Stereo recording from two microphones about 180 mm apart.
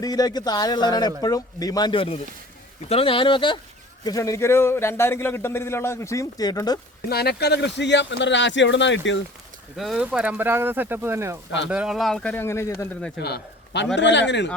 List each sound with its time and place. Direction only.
0.0 s speech: 20° left (ahead or behind)
7.1 s speech: 65° left (ahead or behind); by 9.2 s 90° left
9.7 s speech: centre (ahead or behind)
11.7 s speech: 5° right (ahead or behind); by 12.9 s 15° left (ahead or behind)
13.1 s a man's voice: 65° left (ahead or behind)
13.9 s speech: 80° left